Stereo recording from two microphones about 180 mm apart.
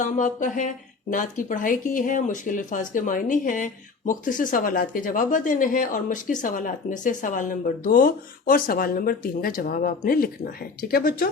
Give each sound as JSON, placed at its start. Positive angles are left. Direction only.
{"t": 0.0, "sound": "speech", "side_deg": 45}